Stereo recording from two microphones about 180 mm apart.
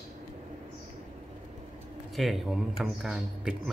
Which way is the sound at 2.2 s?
Centre (ahead or behind).